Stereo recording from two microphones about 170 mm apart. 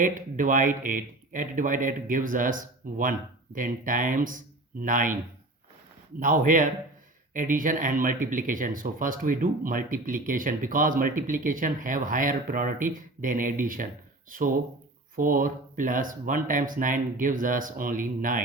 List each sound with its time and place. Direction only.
0.0 s speech: 50° right (ahead or behind)
6.1 s speech: 50° right (ahead or behind)